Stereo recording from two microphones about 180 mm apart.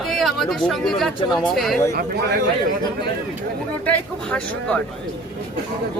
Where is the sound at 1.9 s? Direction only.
60° right (ahead or behind).